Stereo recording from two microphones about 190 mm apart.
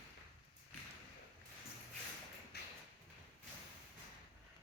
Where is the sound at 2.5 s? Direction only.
60° left (ahead or behind).